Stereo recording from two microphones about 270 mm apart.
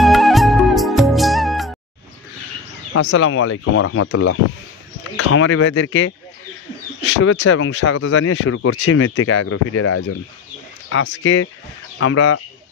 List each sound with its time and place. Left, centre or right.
0.0 s music: centre
2.9 s speech: left